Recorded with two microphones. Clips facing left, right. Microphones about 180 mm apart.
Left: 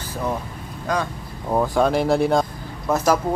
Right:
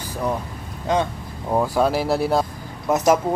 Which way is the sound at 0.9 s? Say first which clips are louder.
Right 3 dB; 25° right (ahead or behind).